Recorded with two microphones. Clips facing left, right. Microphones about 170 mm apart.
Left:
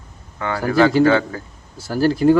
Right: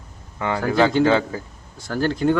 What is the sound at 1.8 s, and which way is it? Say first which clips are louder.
Speech: left 4 dB; 5° left (ahead or behind).